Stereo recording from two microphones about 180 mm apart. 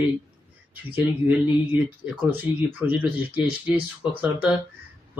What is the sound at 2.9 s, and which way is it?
Speech, 10° right (ahead or behind).